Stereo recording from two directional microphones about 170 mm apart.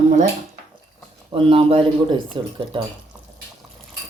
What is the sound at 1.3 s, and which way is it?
Speech, 30° right (ahead or behind).